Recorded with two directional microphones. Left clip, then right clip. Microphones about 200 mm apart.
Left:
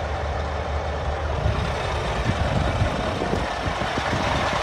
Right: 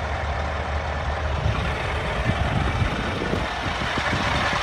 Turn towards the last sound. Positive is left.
turn(degrees=30)  # may be behind; listen again after turning